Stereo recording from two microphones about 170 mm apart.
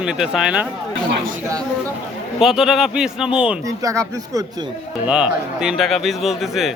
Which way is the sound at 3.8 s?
20° right (ahead or behind).